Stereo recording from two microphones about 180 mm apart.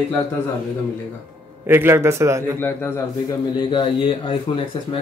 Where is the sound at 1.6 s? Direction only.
10° right (ahead or behind).